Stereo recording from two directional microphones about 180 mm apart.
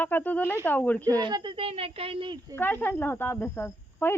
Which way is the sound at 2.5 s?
10° left (ahead or behind).